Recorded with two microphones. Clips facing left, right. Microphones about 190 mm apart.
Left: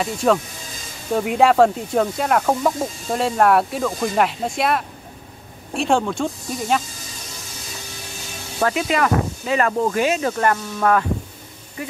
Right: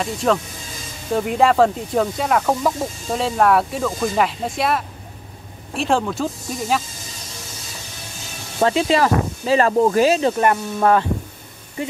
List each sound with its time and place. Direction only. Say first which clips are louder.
0.0 s speech: left 1 dB; centre (ahead or behind)
8.5 s speech: right 3 dB; 25° right (ahead or behind)
10.3 s speech: right 2 dB; 20° right (ahead or behind)